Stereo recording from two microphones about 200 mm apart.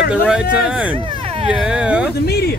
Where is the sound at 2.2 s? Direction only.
55° left (ahead or behind).